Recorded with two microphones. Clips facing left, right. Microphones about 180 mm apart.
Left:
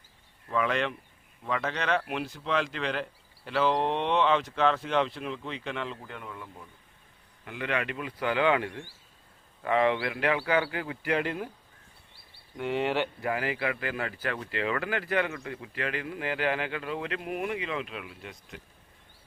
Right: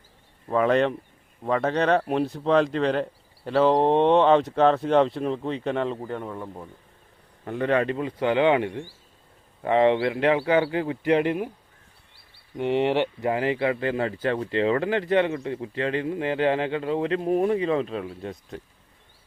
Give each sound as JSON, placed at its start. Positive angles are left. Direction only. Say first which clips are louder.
{"t": 0.5, "sound": "speech", "louder": "right 8 dB", "side_deg": -40}
{"t": 12.5, "sound": "speech", "louder": "right 6 dB", "side_deg": -20}